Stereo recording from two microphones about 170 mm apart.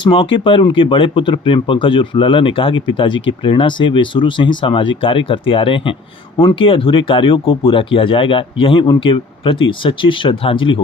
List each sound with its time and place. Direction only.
0.0 s speech: 30° left (ahead or behind)